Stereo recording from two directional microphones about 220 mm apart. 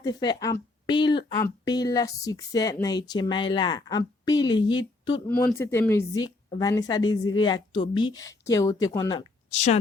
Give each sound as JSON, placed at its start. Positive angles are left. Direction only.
{"t": 0.0, "sound": "speech", "side_deg": 20}
{"t": 5.3, "sound": "speech", "side_deg": 10}